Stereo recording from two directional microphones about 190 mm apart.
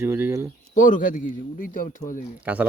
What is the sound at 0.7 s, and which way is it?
Speech, 45° left (ahead or behind).